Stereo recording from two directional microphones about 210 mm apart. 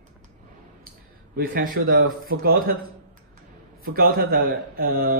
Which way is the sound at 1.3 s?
45° right (ahead or behind).